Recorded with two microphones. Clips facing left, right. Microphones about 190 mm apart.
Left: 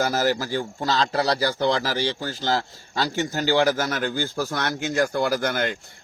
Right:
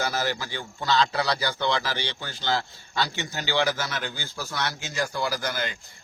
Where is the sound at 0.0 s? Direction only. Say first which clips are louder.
Left 6 dB; 45° left (ahead or behind).